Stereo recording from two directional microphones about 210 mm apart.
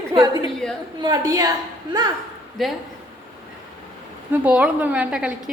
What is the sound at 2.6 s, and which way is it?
Speech, centre (ahead or behind).